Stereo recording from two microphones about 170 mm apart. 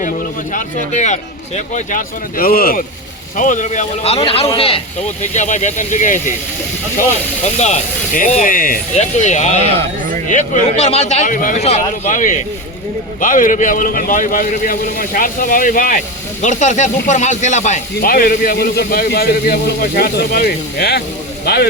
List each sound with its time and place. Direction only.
0.9 s speech: 45° left (ahead or behind); by 2.8 s 60° left (ahead or behind)
3.3 s speech: 50° left (ahead or behind); by 21.7 s 70° left (ahead or behind)